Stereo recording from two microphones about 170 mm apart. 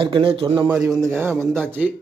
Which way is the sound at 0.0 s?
30° right (ahead or behind).